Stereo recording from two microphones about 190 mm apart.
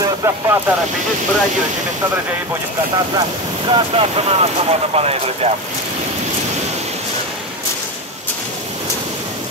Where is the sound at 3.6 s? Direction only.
30° right (ahead or behind).